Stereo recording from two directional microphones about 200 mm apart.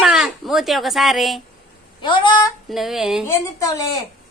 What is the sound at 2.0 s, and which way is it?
Speech, 25° left (ahead or behind).